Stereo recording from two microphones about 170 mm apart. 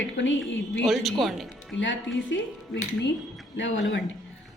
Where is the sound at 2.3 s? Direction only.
90° left.